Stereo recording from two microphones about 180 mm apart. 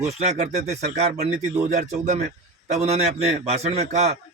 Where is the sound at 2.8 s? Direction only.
35° right (ahead or behind).